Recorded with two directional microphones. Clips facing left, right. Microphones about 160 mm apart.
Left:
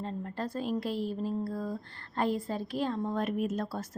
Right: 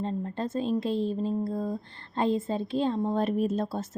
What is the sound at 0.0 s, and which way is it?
A woman's voice, 25° right (ahead or behind).